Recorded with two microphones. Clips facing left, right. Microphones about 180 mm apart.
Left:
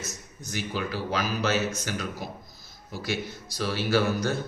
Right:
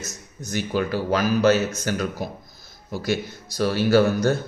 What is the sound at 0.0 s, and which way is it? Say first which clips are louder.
A man's voice: right 3 dB; 45° right (ahead or behind).